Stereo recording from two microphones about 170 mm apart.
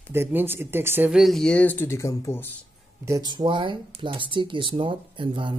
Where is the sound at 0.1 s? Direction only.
10° right (ahead or behind).